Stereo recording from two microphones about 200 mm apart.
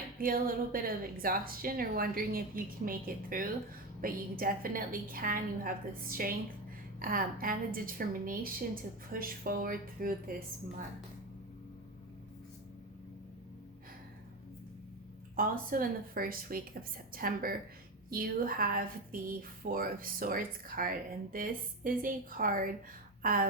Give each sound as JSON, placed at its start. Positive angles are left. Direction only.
{"t": 0.2, "sound": "a woman's voice", "side_deg": -45}
{"t": 15.4, "sound": "a woman's voice", "side_deg": -45}